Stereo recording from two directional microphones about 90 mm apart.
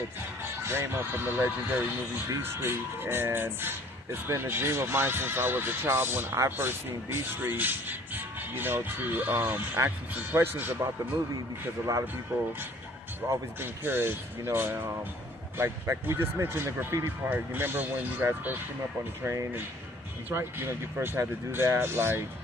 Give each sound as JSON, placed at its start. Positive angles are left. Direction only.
{"t": 0.4, "sound": "speech", "side_deg": -25}
{"t": 10.8, "sound": "a man's voice", "side_deg": -45}
{"t": 12.3, "sound": "speech", "side_deg": -20}